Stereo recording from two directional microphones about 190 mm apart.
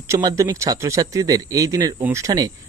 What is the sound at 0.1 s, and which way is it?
Speech, 20° right (ahead or behind).